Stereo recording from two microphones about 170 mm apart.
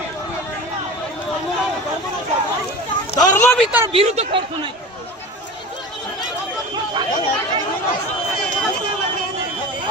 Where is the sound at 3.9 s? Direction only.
35° right (ahead or behind).